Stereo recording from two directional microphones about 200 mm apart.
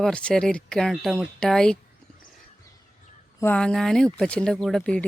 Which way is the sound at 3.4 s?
5° left (ahead or behind).